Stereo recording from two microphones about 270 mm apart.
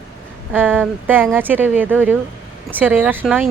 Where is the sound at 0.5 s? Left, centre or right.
Centre.